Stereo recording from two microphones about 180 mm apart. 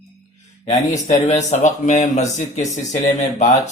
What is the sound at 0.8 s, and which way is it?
Speech, 20° left (ahead or behind).